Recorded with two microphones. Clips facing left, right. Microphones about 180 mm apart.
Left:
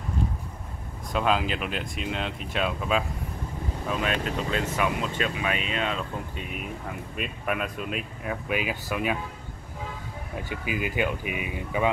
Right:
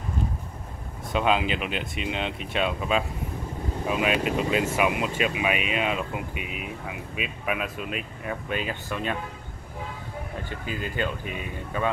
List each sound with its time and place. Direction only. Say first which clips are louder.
1.1 s speech: right 1 dB; centre (ahead or behind)
10.3 s speech: left 4 dB; 10° left (ahead or behind)